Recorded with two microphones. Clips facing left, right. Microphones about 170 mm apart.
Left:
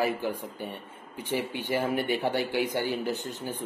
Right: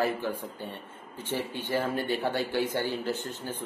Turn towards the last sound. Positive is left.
turn(degrees=15)  # may be behind; listen again after turning